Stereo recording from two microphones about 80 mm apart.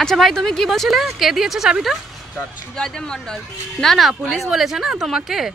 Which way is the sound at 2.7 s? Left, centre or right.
Centre.